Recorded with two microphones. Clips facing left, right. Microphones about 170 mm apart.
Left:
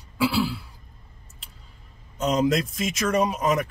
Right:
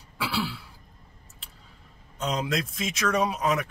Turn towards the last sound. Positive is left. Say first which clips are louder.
# left 3 dB
turn(degrees=0)  # may be behind; listen again after turning